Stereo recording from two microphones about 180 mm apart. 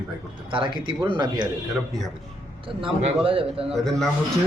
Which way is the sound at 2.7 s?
30° right (ahead or behind).